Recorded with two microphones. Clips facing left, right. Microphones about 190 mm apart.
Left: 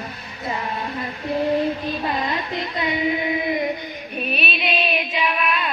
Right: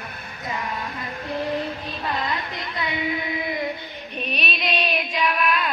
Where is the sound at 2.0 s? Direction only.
20° left (ahead or behind).